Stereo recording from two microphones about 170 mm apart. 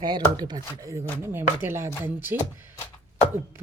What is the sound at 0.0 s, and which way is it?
Speech, 25° right (ahead or behind).